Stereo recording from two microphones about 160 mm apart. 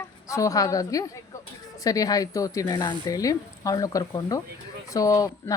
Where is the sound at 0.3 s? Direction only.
20° left (ahead or behind).